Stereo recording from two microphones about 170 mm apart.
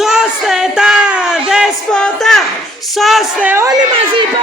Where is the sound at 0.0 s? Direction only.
5° right (ahead or behind).